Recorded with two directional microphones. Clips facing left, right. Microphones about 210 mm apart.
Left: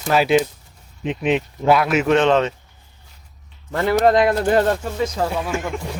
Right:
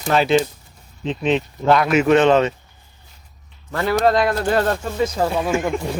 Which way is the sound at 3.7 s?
20° left (ahead or behind).